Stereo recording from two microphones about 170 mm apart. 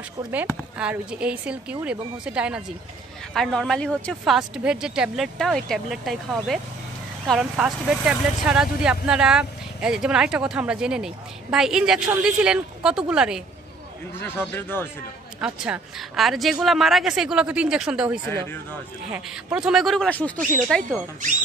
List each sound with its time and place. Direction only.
0.7 s speech: 5° right (ahead or behind)
14.2 s speech: 15° left (ahead or behind)
15.4 s speech: 5° right (ahead or behind)
20.3 s speech: 50° right (ahead or behind)
20.6 s speech: 5° left (ahead or behind)